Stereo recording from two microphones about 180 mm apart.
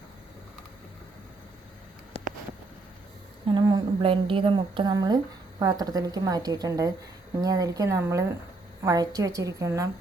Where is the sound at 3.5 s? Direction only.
25° right (ahead or behind).